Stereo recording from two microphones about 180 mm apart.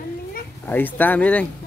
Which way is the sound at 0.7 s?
10° left (ahead or behind).